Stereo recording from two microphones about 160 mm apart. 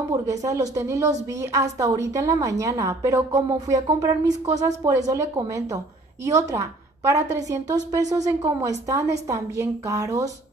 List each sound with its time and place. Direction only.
0.1 s a woman's voice: 20° right (ahead or behind)